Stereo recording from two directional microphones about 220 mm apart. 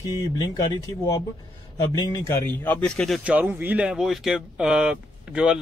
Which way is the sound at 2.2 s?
10° left (ahead or behind).